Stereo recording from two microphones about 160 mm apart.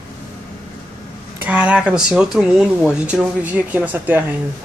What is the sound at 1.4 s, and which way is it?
Speech, 10° right (ahead or behind).